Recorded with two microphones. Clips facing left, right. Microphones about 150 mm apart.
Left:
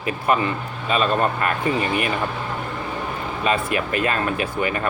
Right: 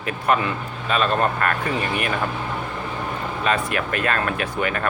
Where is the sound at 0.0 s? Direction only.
5° left (ahead or behind).